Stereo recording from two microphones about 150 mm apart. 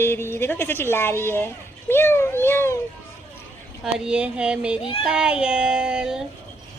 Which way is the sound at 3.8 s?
5° right (ahead or behind).